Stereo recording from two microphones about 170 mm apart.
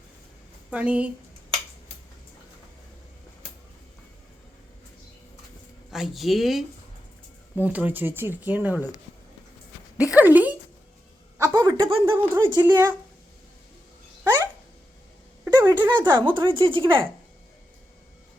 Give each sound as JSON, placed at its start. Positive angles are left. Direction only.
{"t": 0.7, "sound": "speech", "side_deg": -5}
{"t": 5.9, "sound": "speech", "side_deg": 0}
{"t": 10.0, "sound": "speech", "side_deg": -10}
{"t": 11.3, "sound": "a sound", "side_deg": -20}
{"t": 12.0, "sound": "speech", "side_deg": -15}
{"t": 15.5, "sound": "speech", "side_deg": -25}